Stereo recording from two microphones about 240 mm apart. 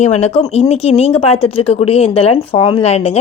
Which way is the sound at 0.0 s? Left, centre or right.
Left.